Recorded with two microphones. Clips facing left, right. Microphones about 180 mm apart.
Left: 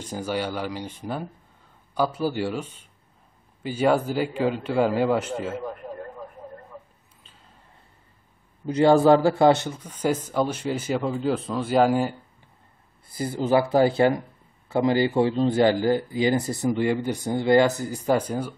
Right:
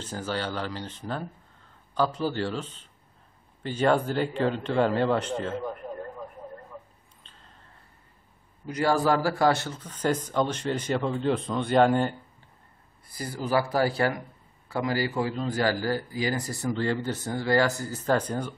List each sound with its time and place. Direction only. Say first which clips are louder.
0.0 s speech: left 3 dB; 10° left (ahead or behind)
7.2 s a sound: even; 5° left (ahead or behind)
8.6 s speech: left 7 dB; 25° left (ahead or behind); by 12.2 s 5° left (ahead or behind)
13.1 s speech: left 5 dB; 25° left (ahead or behind)